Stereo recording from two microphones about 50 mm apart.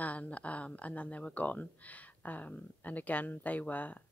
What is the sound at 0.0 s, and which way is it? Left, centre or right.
Speech, left.